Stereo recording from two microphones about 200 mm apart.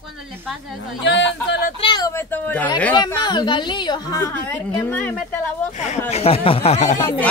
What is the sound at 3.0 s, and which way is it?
A man's voice, 20° left (ahead or behind).